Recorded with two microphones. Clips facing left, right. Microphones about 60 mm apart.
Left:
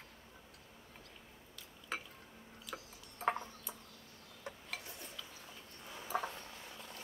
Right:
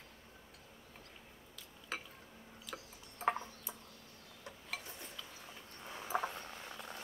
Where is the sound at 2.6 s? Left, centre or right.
Centre.